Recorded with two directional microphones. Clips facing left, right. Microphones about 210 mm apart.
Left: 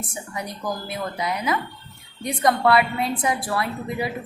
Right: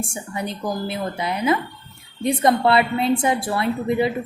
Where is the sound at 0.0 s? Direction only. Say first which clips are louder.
Right 4 dB; 30° right (ahead or behind).